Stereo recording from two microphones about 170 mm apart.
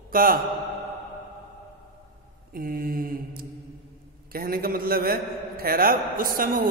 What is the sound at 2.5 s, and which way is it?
A man's voice, 55° right (ahead or behind).